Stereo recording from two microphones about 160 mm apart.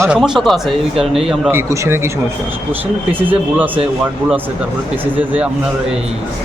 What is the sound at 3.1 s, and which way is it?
Speech, 10° right (ahead or behind).